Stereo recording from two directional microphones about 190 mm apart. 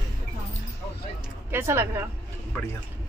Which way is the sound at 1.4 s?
15° right (ahead or behind).